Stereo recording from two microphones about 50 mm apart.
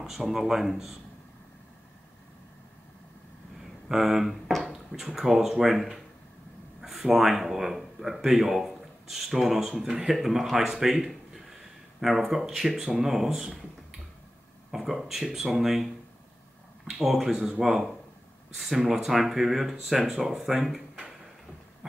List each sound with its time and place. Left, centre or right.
0.0 s speech: centre
3.9 s speech: centre
14.7 s speech: centre
17.0 s speech: centre